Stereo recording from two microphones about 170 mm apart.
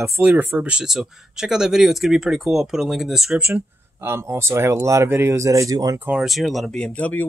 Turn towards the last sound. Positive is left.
turn(degrees=10)  # may be behind; listen again after turning